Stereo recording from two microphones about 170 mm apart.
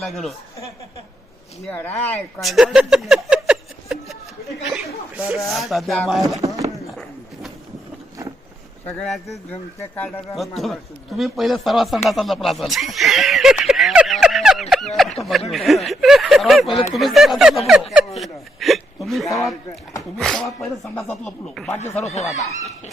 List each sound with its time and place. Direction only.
0.0 s speech: centre (ahead or behind)
1.6 s speech: 10° left (ahead or behind)
2.4 s a sound: centre (ahead or behind)
5.5 s speech: centre (ahead or behind)
8.9 s speech: 5° left (ahead or behind)
22.0 s speech: 40° left (ahead or behind)